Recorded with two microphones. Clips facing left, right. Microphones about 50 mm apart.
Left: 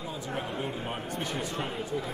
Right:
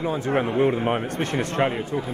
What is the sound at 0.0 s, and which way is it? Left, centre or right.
Speech, right.